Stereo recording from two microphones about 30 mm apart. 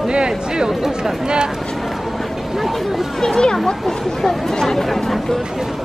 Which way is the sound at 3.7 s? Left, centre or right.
Centre.